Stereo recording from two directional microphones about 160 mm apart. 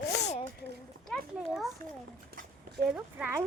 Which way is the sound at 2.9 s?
10° right (ahead or behind).